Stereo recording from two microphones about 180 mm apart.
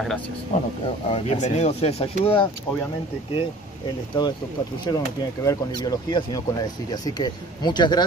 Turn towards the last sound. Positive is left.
turn(degrees=25)  # may be behind; listen again after turning